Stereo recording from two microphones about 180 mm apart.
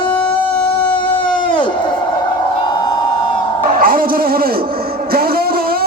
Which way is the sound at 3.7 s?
50° right (ahead or behind).